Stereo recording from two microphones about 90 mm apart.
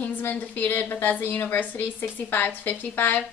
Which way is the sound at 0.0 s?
20° left (ahead or behind).